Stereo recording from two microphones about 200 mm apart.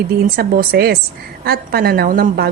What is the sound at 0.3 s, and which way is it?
A woman's voice, 50° right (ahead or behind).